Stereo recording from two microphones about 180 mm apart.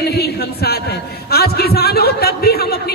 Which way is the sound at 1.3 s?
60° left (ahead or behind).